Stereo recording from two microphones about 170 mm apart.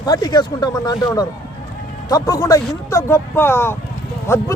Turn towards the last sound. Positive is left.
turn(degrees=15)  # may be behind; listen again after turning